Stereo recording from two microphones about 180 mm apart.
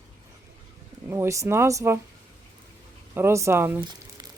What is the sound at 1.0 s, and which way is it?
Speech, 15° right (ahead or behind).